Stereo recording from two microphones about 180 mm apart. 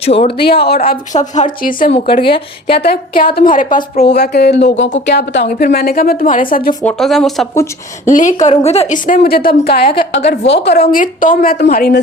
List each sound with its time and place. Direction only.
0.0 s speech: 35° left (ahead or behind)
0.9 s a woman's voice: 45° left (ahead or behind)
2.2 s speech: 30° left (ahead or behind)
2.8 s a woman's voice: 60° left (ahead or behind)
5.7 s a woman's voice: 55° left (ahead or behind)
6.8 s speech: centre (ahead or behind)
8.0 s a woman's voice: 45° left (ahead or behind)
9.0 s speech: 55° left (ahead or behind)
10.2 s a woman's voice: 70° left (ahead or behind)
10.9 s a woman's voice: 50° left (ahead or behind)